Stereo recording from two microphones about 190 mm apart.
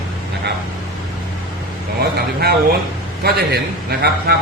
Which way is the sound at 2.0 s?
55° right (ahead or behind).